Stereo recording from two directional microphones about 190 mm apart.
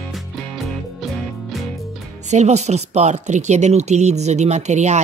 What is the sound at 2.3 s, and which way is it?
Speech, 35° right (ahead or behind).